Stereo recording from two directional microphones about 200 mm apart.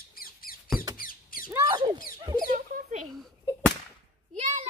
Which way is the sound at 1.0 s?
45° left (ahead or behind).